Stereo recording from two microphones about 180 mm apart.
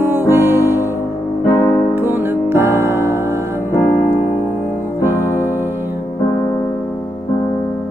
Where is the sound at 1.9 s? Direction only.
10° right (ahead or behind).